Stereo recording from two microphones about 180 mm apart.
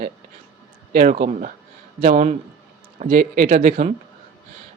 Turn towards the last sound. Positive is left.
turn(degrees=-45)  # may be behind; listen again after turning